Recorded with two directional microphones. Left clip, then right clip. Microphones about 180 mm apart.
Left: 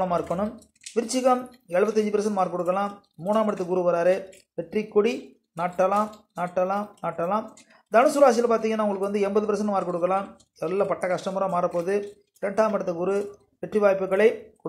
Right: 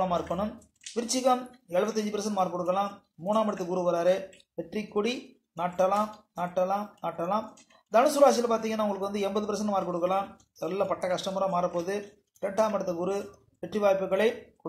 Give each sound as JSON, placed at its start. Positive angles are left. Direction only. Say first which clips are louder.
{"t": 0.0, "sound": "a man's voice", "louder": "left 3 dB", "side_deg": 25}